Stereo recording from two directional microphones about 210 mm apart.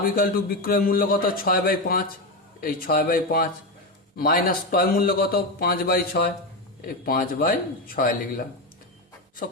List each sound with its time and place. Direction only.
0.0 s a man's voice: 45° left (ahead or behind)